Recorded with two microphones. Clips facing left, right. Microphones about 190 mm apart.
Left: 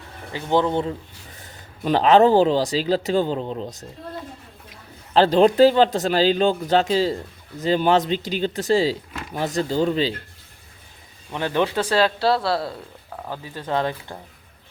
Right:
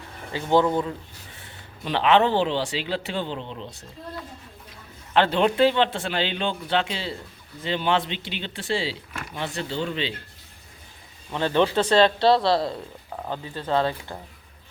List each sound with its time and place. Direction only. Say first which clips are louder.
0.5 s speech: even; 20° left (ahead or behind)
1.4 s speech: left 7 dB; 40° left (ahead or behind)
5.1 s speech: left 5 dB; 35° left (ahead or behind)
11.3 s speech: right 1 dB; 15° left (ahead or behind)
13.4 s speech: even; 15° left (ahead or behind)